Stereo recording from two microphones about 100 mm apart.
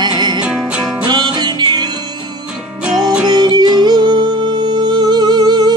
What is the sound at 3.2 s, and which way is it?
Music, 45° right (ahead or behind).